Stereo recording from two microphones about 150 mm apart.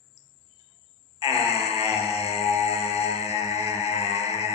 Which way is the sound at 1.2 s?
40° left (ahead or behind).